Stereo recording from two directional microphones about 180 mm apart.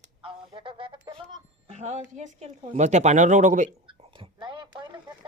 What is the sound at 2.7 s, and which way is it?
Speech, 40° right (ahead or behind).